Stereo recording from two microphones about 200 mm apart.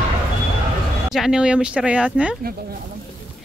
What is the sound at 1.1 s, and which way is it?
Speech, 5° right (ahead or behind).